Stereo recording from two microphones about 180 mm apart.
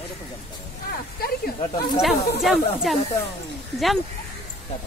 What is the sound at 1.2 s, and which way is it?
Snake, 60° left (ahead or behind).